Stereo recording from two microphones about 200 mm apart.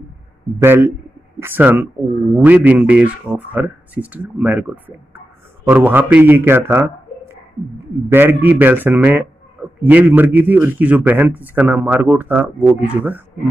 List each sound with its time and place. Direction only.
0.6 s a man's voice: 10° right (ahead or behind)
8.1 s a man's voice: 10° right (ahead or behind)